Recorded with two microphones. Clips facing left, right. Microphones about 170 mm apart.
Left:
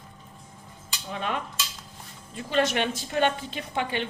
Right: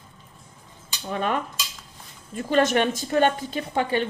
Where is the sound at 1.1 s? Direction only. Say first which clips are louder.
Right 5 dB; 50° right (ahead or behind).